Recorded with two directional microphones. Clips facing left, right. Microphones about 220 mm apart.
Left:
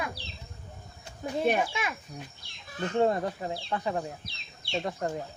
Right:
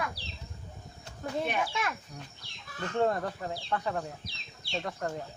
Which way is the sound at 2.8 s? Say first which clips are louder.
Left 3 dB; 15° left (ahead or behind).